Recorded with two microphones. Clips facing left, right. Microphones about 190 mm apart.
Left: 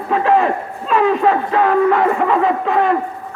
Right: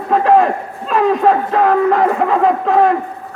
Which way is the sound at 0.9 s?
40° right (ahead or behind).